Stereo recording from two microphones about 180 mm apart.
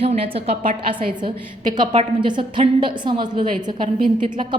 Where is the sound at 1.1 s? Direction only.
25° right (ahead or behind).